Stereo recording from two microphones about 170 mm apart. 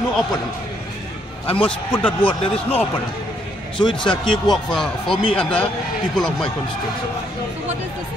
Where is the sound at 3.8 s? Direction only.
30° left (ahead or behind).